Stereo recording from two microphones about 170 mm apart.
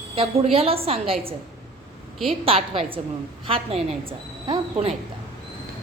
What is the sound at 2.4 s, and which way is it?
A woman's voice, 35° right (ahead or behind).